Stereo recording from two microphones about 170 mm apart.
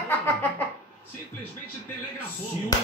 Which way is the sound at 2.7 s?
20° left (ahead or behind).